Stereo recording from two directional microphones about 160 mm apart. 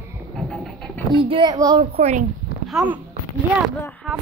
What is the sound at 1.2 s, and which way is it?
Speech, 30° right (ahead or behind).